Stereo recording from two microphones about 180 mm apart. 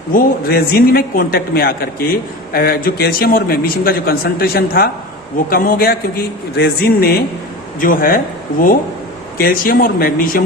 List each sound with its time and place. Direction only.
0.1 s a man's voice: 55° left (ahead or behind)
9.4 s speech: 55° left (ahead or behind)